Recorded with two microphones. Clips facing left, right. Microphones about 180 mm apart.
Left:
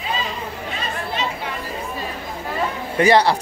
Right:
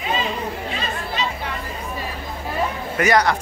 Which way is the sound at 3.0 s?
30° left (ahead or behind).